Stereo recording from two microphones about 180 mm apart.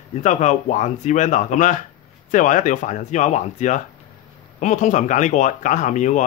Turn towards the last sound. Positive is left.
turn(degrees=40)  # may be behind; listen again after turning